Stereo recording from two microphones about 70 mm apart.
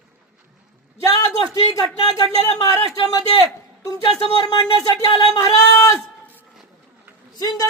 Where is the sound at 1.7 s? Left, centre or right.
Left.